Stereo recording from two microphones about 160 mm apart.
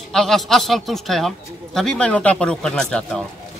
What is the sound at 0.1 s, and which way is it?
Speech, centre (ahead or behind).